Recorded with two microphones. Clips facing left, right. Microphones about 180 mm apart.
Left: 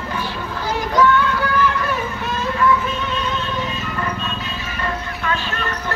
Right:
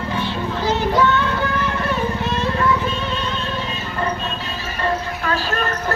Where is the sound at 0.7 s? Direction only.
25° right (ahead or behind).